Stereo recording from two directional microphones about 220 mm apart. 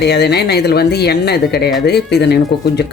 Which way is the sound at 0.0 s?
45° left (ahead or behind).